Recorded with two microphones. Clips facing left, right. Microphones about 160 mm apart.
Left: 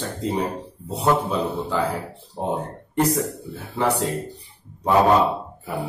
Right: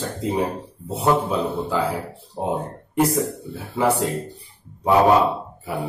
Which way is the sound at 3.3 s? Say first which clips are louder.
Right 2 dB; centre (ahead or behind).